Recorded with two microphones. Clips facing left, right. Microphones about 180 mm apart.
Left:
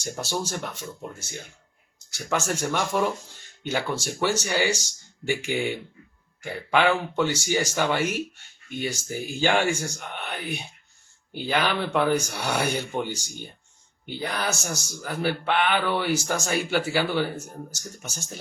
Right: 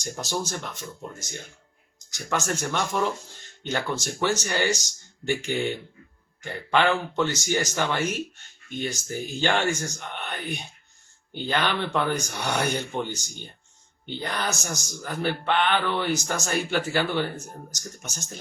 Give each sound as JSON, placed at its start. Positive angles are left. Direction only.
{"t": 0.4, "sound": "speech", "side_deg": 10}
{"t": 2.1, "sound": "speech", "side_deg": 10}